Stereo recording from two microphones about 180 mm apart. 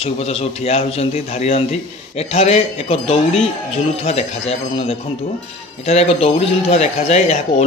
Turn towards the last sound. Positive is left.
turn(degrees=35)  # may be behind; listen again after turning